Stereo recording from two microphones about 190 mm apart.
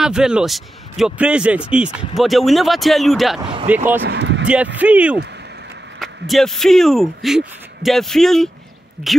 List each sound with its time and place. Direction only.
0.0 s speech: 5° right (ahead or behind)
4.0 s speech: 65° right (ahead or behind)
4.7 s speech: 5° right (ahead or behind)